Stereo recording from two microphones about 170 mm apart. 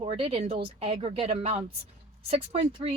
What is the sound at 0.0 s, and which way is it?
Speech, 35° right (ahead or behind).